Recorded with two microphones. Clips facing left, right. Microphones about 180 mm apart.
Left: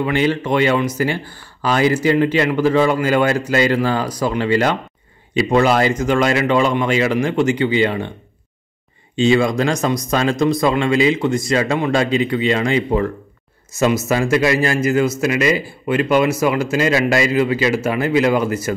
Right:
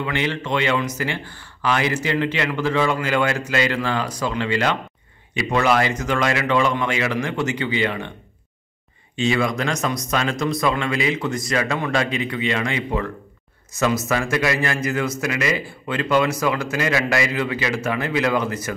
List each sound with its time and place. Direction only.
0.0 s speech: 35° left (ahead or behind)
9.1 s speech: 30° left (ahead or behind)